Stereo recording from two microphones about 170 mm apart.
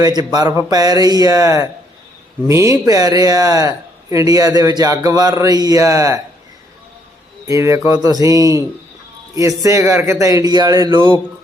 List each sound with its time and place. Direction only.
0.0 s speech: 25° right (ahead or behind)
7.4 s speech: 20° right (ahead or behind)